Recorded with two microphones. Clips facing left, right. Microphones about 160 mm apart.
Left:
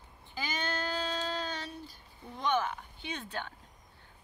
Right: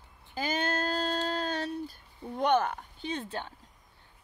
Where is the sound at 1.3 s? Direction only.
60° right (ahead or behind).